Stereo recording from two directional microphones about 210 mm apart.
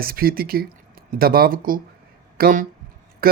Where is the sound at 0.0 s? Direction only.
45° right (ahead or behind).